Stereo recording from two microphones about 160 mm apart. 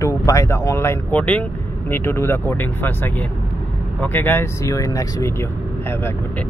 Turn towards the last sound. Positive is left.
turn(degrees=15)  # may be behind; listen again after turning